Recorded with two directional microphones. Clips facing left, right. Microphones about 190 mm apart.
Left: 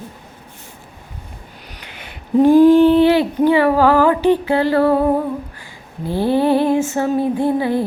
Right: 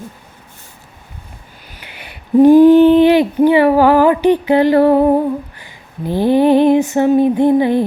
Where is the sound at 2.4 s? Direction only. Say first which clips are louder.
Right 3 dB; 15° right (ahead or behind).